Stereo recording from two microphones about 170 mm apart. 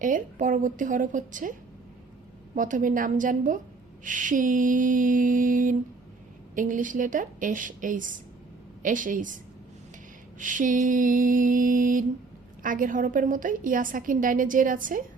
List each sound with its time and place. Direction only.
0.0 s a woman's voice: 50° right (ahead or behind)
2.6 s a woman's voice: 50° right (ahead or behind)
10.4 s a woman's voice: 50° right (ahead or behind)